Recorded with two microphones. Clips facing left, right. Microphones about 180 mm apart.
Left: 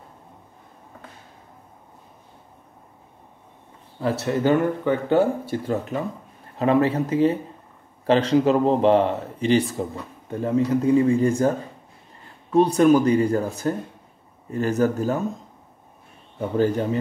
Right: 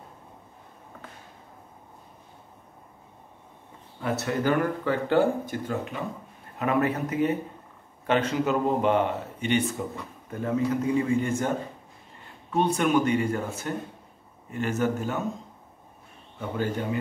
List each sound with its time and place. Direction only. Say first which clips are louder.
4.0 s speech: left 5 dB; 30° left (ahead or behind)
12.5 s speech: left 7 dB; 35° left (ahead or behind)
16.3 s speech: left 8 dB; 40° left (ahead or behind)